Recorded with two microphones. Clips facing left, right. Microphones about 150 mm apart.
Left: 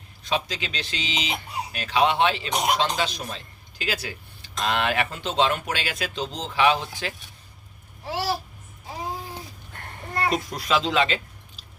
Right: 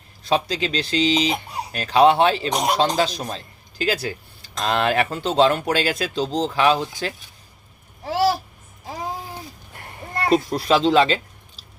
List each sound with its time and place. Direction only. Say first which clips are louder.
0.3 s speech: right 6 dB; 35° right (ahead or behind)
10.2 s speech: right 8 dB; 30° right (ahead or behind)